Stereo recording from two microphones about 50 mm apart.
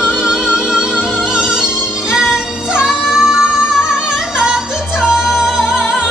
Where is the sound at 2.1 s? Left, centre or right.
Centre.